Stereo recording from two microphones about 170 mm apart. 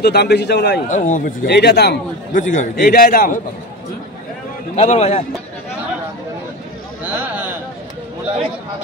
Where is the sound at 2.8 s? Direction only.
60° left (ahead or behind).